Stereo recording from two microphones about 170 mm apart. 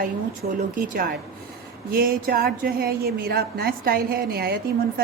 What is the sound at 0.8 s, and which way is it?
A woman's voice, 55° right (ahead or behind).